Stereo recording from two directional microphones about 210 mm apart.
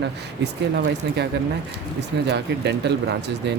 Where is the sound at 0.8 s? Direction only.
50° right (ahead or behind).